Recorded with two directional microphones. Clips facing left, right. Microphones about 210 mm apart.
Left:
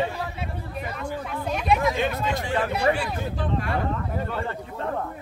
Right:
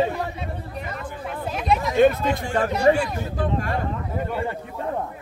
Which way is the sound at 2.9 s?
30° right (ahead or behind).